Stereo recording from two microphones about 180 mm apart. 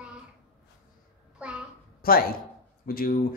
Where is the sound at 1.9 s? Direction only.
55° left (ahead or behind).